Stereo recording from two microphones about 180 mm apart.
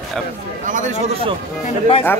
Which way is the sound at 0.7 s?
45° right (ahead or behind).